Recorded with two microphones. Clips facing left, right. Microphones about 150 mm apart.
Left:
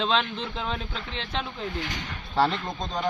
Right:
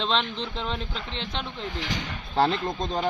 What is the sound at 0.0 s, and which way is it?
A man's voice, 5° left (ahead or behind).